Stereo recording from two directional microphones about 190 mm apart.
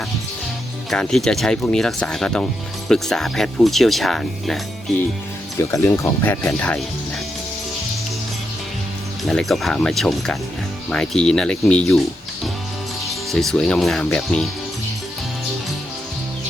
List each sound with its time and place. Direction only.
0.9 s speech: centre (ahead or behind)
5.5 s speech: 15° left (ahead or behind)
9.2 s speech: centre (ahead or behind)
13.1 s speech: centre (ahead or behind)